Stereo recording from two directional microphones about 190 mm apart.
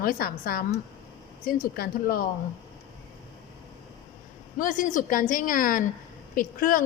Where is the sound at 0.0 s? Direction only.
50° left (ahead or behind).